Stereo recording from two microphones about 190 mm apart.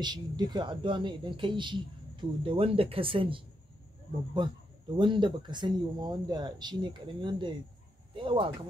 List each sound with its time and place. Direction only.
0.0 s speech: 20° right (ahead or behind)
4.9 s speech: 25° right (ahead or behind)